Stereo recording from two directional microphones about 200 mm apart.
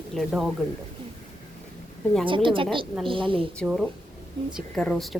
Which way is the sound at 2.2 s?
25° right (ahead or behind).